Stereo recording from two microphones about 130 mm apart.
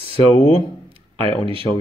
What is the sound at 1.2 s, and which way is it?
Speech, 45° right (ahead or behind).